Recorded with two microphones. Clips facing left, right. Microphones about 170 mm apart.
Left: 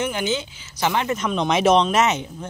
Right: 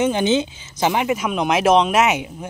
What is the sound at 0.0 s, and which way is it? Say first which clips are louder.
Speech: right 6 dB; 20° right (ahead or behind).